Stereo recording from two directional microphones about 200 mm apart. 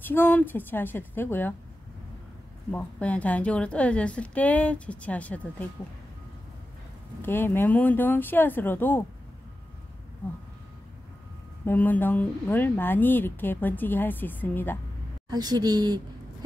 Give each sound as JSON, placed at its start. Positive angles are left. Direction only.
{"t": 0.0, "sound": "speech", "side_deg": 10}
{"t": 2.7, "sound": "speech", "side_deg": 5}
{"t": 7.2, "sound": "speech", "side_deg": 10}
{"t": 11.6, "sound": "speech", "side_deg": 10}
{"t": 15.2, "sound": "a woman's voice", "side_deg": -20}